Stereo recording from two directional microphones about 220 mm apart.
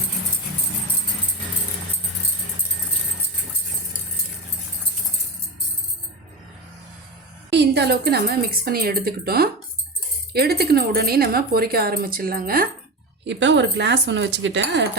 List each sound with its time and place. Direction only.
7.5 s speech: 50° right (ahead or behind)
13.2 s speech: 55° right (ahead or behind)